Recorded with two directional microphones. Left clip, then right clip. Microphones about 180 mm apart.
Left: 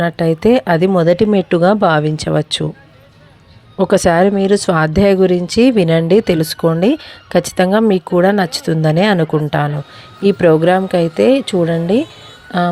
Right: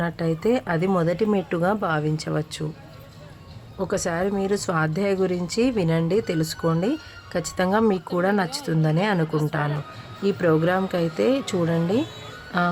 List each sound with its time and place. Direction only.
0.0 s speech: 35° left (ahead or behind)
3.8 s speech: 45° left (ahead or behind)